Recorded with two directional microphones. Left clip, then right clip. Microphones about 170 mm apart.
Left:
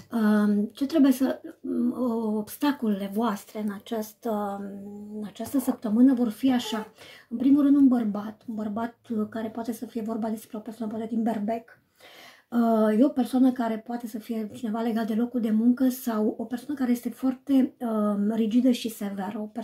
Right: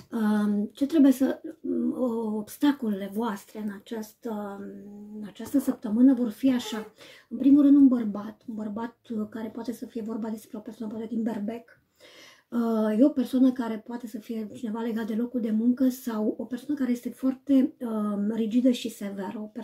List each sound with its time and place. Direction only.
0.1 s speech: 35° left (ahead or behind)
7.4 s speech: 30° left (ahead or behind)